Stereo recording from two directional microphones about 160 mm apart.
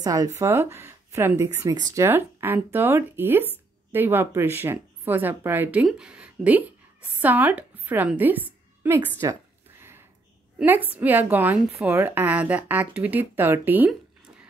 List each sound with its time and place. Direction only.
0.0 s a woman's voice: 20° right (ahead or behind)